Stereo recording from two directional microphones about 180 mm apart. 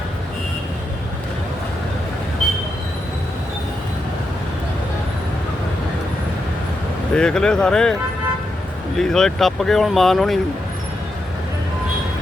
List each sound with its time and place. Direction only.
7.1 s speech: 5° left (ahead or behind)
9.0 s speech: 5° left (ahead or behind)